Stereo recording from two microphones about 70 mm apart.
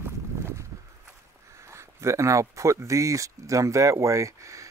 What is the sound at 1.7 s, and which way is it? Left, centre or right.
Speech, right.